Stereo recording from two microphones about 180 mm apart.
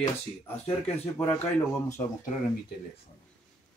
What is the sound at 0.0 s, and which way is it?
Speech, 35° left (ahead or behind).